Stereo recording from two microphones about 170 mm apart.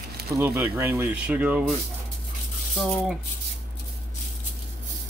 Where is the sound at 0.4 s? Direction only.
15° right (ahead or behind).